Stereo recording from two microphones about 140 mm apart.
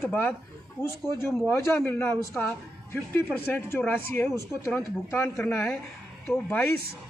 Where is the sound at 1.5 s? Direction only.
15° left (ahead or behind).